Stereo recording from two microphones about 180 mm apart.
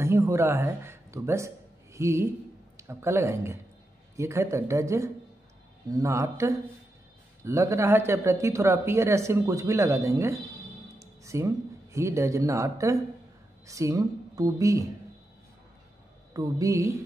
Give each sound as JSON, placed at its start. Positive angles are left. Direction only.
{"t": 0.0, "sound": "a woman's voice", "side_deg": -15}
{"t": 16.3, "sound": "speech", "side_deg": -20}